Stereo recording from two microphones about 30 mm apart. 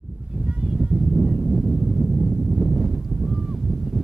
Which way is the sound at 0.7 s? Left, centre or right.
Right.